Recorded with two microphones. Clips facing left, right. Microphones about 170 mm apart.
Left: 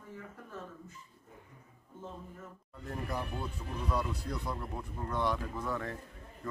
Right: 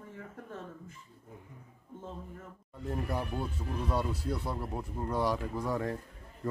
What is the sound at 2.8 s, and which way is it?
Speech, 30° right (ahead or behind).